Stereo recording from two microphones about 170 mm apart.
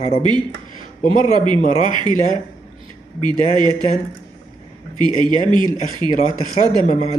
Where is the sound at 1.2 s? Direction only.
30° right (ahead or behind).